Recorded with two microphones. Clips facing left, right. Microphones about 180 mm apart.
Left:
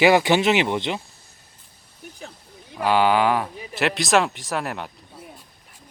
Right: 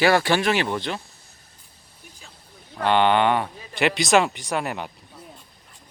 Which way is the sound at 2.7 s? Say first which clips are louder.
Even; 5° left (ahead or behind).